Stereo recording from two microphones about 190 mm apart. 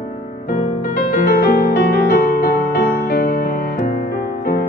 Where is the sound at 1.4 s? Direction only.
50° left (ahead or behind).